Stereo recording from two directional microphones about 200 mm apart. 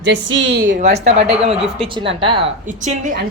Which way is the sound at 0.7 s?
40° right (ahead or behind).